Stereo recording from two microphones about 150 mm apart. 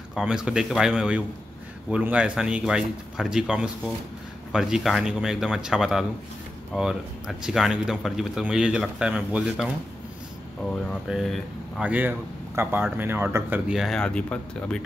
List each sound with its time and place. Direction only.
0.1 s speech: 5° right (ahead or behind)
11.1 s speech: centre (ahead or behind)
11.8 s speech: 10° right (ahead or behind); by 14.8 s 5° left (ahead or behind)